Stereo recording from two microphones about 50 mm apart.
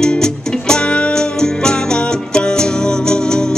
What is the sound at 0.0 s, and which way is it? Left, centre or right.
Music, centre.